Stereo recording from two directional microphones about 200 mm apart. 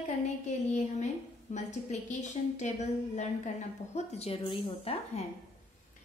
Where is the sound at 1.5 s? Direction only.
35° left (ahead or behind).